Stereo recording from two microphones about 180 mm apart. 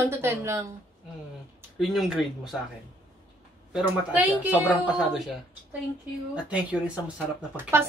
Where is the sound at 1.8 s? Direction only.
Centre (ahead or behind).